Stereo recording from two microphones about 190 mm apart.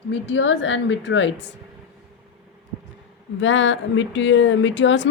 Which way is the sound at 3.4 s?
80° left.